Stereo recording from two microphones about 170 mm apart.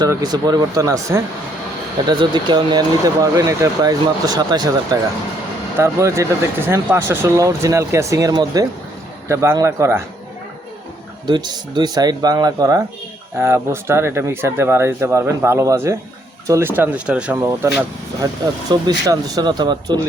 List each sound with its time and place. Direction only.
0.0 s speech: 20° right (ahead or behind)
11.3 s speech: 25° right (ahead or behind)